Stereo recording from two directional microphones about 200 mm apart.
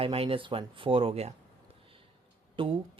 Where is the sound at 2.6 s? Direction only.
25° right (ahead or behind).